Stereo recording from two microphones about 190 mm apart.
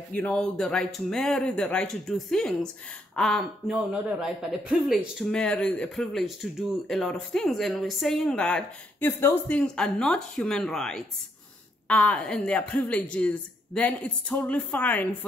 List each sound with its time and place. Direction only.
0.1 s a woman's voice: 5° left (ahead or behind)